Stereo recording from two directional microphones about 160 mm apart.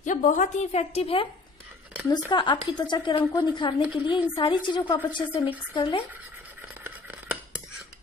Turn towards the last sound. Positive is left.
turn(degrees=-10)  # may be behind; listen again after turning